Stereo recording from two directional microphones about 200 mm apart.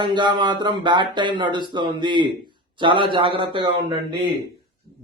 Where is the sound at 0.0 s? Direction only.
20° right (ahead or behind).